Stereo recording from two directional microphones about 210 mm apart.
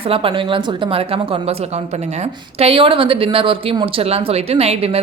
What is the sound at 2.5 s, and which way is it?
Speech, 25° right (ahead or behind).